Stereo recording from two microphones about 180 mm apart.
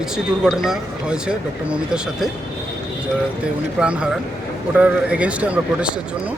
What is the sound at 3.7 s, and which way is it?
A man's voice, 5° right (ahead or behind).